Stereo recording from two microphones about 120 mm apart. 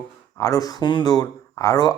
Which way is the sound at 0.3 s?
25° left (ahead or behind).